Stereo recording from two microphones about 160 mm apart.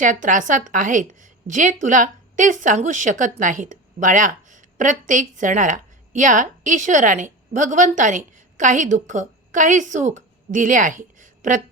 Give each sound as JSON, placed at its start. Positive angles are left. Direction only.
{"t": 0.0, "sound": "a woman's voice", "side_deg": -55}